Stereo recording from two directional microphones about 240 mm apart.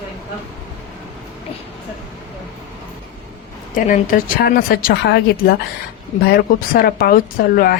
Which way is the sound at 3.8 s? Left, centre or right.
Left.